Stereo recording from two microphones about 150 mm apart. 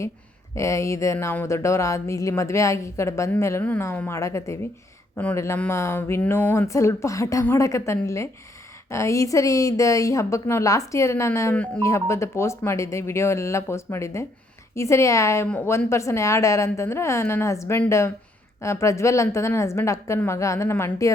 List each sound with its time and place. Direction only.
0.5 s speech: 20° left (ahead or behind)